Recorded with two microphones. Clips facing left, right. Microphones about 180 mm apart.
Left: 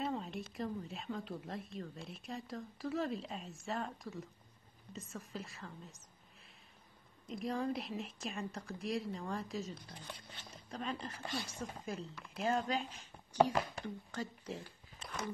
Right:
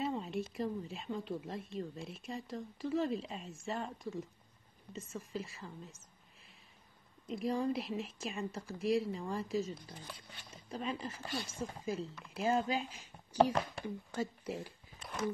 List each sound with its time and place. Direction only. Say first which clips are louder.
0.0 s a sound: right 2 dB; centre (ahead or behind)
0.6 s speech: right 3 dB; centre (ahead or behind)
7.2 s speech: right 3 dB; centre (ahead or behind)